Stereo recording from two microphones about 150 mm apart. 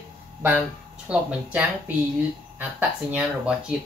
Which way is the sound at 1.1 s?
10° right (ahead or behind).